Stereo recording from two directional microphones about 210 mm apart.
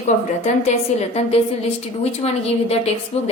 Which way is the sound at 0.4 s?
30° left (ahead or behind).